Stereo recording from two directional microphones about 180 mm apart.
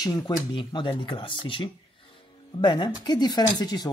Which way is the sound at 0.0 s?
25° left (ahead or behind).